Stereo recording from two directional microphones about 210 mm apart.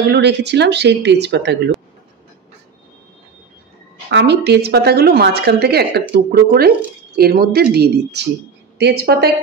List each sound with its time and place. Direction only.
0.0 s speech: 55° right (ahead or behind)
4.1 s speech: 55° right (ahead or behind)